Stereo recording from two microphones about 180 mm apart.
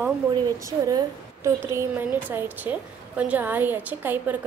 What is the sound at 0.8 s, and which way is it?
A woman's voice, 15° right (ahead or behind).